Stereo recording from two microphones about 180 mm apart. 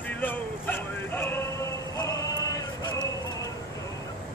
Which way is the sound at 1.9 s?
20° left (ahead or behind).